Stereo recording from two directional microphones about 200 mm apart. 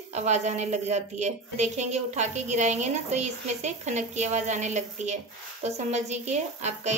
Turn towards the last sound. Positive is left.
turn(degrees=-35)  # may be behind; listen again after turning